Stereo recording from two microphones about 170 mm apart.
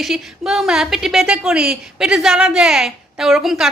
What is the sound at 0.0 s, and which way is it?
Speech, centre (ahead or behind).